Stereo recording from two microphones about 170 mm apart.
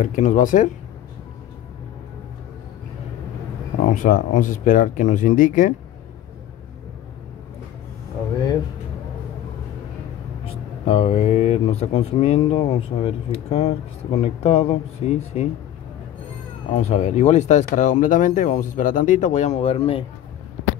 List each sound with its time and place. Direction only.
0.0 s speech: 45° left (ahead or behind)
3.9 s speech: 50° left (ahead or behind)
10.4 s speech: 35° left (ahead or behind)
16.7 s speech: 40° left (ahead or behind)